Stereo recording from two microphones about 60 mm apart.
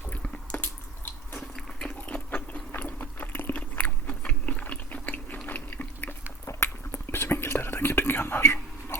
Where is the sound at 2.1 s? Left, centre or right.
Left.